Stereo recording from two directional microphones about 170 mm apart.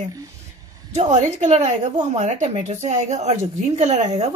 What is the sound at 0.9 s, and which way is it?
A woman's voice, 40° right (ahead or behind).